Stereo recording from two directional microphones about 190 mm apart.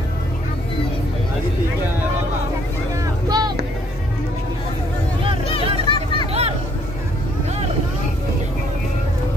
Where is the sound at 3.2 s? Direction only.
20° right (ahead or behind).